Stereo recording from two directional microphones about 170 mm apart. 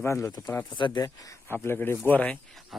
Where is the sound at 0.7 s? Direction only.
25° left (ahead or behind).